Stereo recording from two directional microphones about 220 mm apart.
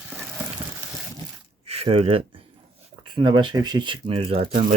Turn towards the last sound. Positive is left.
turn(degrees=-30)  # may be behind; listen again after turning